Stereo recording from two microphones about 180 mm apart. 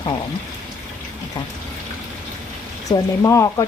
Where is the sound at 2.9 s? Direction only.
20° left (ahead or behind).